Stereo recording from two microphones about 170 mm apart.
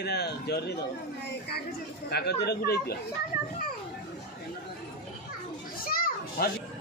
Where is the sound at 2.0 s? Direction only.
70° left (ahead or behind).